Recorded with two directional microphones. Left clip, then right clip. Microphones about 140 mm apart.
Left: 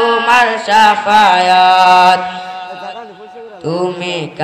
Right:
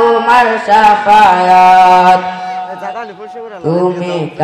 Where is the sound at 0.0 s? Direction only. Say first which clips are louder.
Right 2 dB; 15° left (ahead or behind).